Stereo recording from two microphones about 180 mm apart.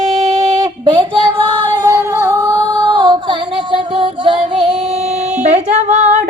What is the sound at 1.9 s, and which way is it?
Singing, 15° right (ahead or behind).